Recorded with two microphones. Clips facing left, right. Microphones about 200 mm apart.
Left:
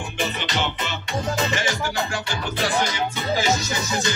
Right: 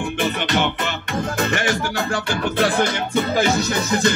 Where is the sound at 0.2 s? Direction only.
55° right (ahead or behind).